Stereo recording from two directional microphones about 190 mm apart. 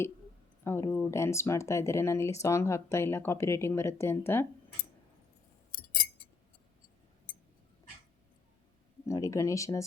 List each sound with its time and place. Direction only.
0.6 s speech: 15° left (ahead or behind)
9.0 s speech: 15° left (ahead or behind)